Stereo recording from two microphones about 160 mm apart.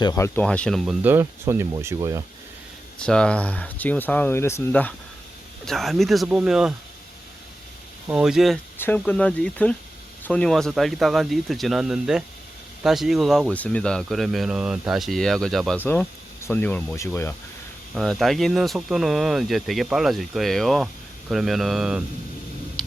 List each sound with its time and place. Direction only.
0.0 s speech: 25° left (ahead or behind)
0.3 s speech: 5° left (ahead or behind)
1.0 s speech: 15° right (ahead or behind)
3.0 s speech: 5° left (ahead or behind)
8.0 s speech: 5° right (ahead or behind)
8.8 s speech: 10° left (ahead or behind)
15.8 s speech: 10° left (ahead or behind)
17.9 s speech: centre (ahead or behind)